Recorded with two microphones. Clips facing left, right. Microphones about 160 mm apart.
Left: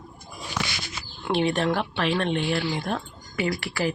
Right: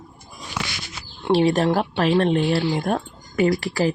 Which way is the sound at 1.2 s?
35° right (ahead or behind).